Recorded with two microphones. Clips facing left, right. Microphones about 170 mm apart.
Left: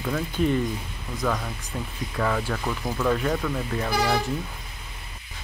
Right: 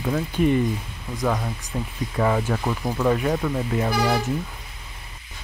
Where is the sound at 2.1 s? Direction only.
25° right (ahead or behind).